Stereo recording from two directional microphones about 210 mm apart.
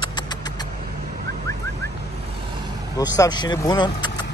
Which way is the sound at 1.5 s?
15° left (ahead or behind).